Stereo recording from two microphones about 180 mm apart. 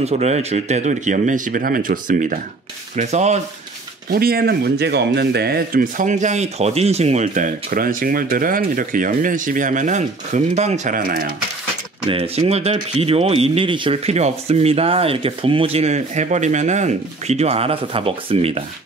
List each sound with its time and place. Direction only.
0.0 s speech: 35° right (ahead or behind)
4.1 s speech: 55° right (ahead or behind)
12.1 s speech: 35° right (ahead or behind)